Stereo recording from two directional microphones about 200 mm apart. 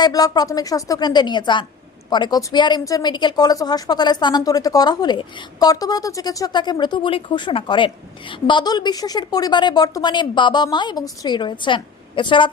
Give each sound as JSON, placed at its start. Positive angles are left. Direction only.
{"t": 0.0, "sound": "speech", "side_deg": 20}